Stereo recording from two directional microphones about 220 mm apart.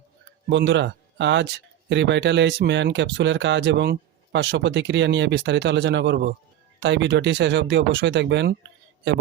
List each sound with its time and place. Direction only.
0.5 s speech: 55° right (ahead or behind)